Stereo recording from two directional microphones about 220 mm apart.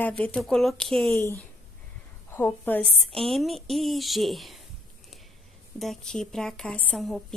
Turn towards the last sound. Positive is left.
turn(degrees=0)  # may be behind; listen again after turning